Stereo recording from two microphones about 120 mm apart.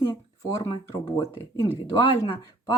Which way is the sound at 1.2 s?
25° left (ahead or behind).